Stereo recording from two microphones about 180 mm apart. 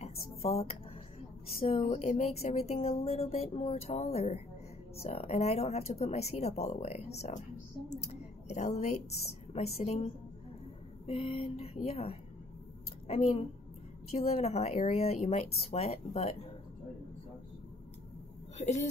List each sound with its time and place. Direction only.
0.0 s speech: 35° left (ahead or behind)
8.0 s a woman's voice: 40° left (ahead or behind)
18.6 s speech: 40° left (ahead or behind)